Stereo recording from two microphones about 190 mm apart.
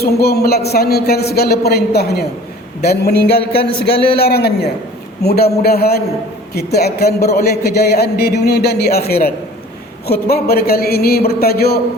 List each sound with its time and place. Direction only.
0.0 s speech: 55° left (ahead or behind)